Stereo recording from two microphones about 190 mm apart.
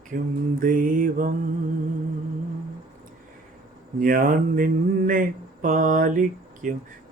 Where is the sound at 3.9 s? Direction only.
45° right (ahead or behind).